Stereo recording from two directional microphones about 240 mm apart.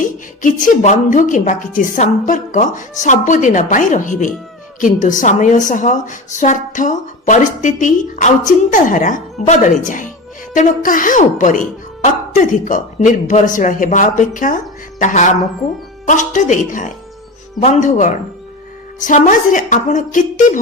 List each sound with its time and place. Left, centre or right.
0.0 s a woman's voice: left